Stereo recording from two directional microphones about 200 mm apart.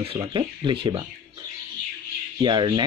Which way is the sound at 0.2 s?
25° right (ahead or behind).